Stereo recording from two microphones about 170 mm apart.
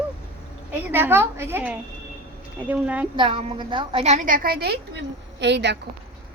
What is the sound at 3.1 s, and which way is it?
A woman's voice, 30° right (ahead or behind).